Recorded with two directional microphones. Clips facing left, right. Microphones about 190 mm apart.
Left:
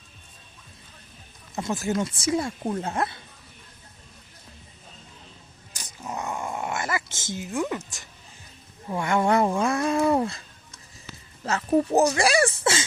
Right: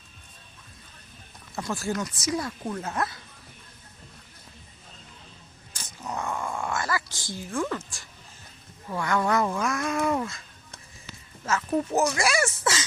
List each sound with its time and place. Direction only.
1.5 s speech: 20° left (ahead or behind)
5.7 s dog: 15° left (ahead or behind)
8.9 s speech: 25° left (ahead or behind)
11.4 s speech: 30° left (ahead or behind)